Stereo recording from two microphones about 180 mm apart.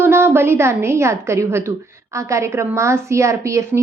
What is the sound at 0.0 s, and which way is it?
A woman's voice, 15° right (ahead or behind).